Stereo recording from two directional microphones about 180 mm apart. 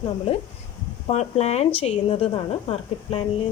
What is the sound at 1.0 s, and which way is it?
A woman's voice, 35° left (ahead or behind).